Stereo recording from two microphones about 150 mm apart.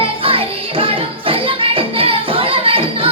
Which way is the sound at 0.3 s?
35° right (ahead or behind).